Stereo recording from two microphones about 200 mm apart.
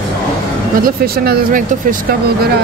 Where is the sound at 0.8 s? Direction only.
45° right (ahead or behind).